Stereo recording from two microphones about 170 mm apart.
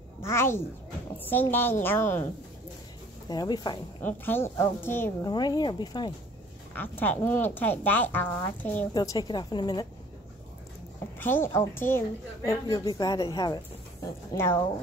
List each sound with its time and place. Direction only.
0.2 s speech: 15° left (ahead or behind)
3.3 s speech: 25° left (ahead or behind)
4.0 s speech: 10° left (ahead or behind)
5.2 s speech: 25° left (ahead or behind)
6.7 s speech: 10° left (ahead or behind)
8.9 s speech: 20° left (ahead or behind)
11.1 s speech: 10° left (ahead or behind)
14.3 s speech: 15° left (ahead or behind)